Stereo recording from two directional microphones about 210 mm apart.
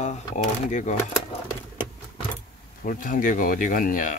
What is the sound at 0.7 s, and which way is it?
Speech, 35° left (ahead or behind).